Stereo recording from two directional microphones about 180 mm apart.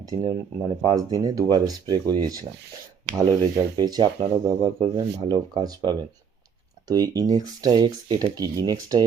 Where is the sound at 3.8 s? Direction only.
20° right (ahead or behind).